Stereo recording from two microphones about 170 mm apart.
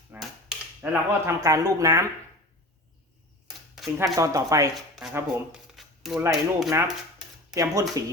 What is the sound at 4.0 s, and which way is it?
Speech, 20° right (ahead or behind).